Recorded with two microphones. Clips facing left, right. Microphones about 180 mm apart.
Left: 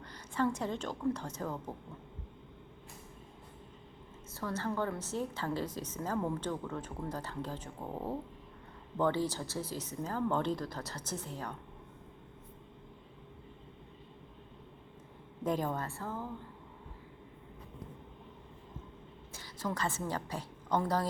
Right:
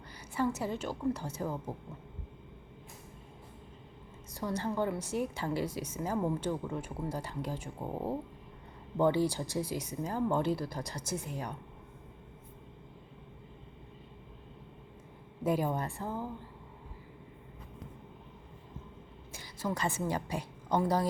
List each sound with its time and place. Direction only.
0.1 s a woman's voice: 10° right (ahead or behind)
4.3 s a woman's voice: 15° right (ahead or behind)
15.4 s a woman's voice: 10° right (ahead or behind)
19.3 s a woman's voice: 10° right (ahead or behind)